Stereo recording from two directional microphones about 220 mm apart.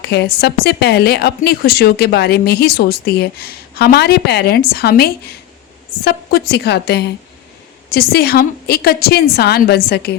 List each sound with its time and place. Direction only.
0.0 s speech: 50° left (ahead or behind)